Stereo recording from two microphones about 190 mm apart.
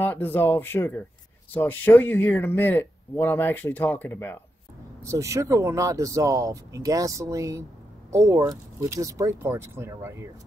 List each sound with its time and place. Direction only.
0.0 s speech: 10° left (ahead or behind)
5.0 s speech: 15° right (ahead or behind)